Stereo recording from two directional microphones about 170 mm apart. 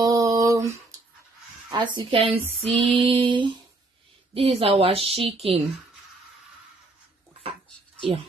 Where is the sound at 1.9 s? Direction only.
35° right (ahead or behind).